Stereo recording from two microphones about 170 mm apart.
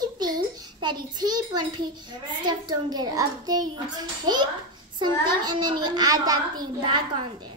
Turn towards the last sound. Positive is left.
turn(degrees=-25)  # may be behind; listen again after turning